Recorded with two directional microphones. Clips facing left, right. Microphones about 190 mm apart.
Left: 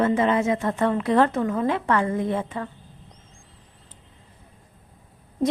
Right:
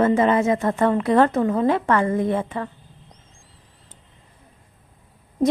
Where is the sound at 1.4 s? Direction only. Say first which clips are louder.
Right 4 dB; 35° right (ahead or behind).